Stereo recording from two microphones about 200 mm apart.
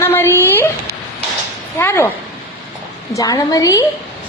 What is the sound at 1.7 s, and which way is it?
Speech, 10° left (ahead or behind).